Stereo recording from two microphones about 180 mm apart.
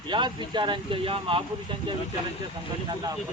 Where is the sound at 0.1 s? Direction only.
25° right (ahead or behind).